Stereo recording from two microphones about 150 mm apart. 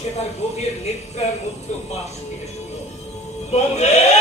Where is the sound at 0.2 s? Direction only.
45° left (ahead or behind).